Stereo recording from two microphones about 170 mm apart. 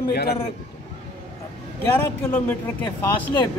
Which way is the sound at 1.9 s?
15° left (ahead or behind).